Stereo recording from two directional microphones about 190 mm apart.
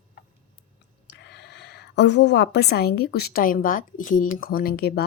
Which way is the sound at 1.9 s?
65° left (ahead or behind).